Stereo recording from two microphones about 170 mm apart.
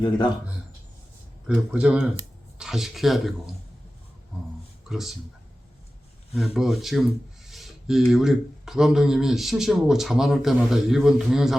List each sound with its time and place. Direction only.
1.5 s speech: 5° right (ahead or behind)
4.9 s speech: centre (ahead or behind)
6.3 s speech: centre (ahead or behind)